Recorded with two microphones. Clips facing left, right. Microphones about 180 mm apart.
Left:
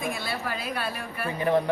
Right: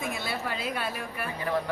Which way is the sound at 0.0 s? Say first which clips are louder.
Left 2 dB; 20° right (ahead or behind).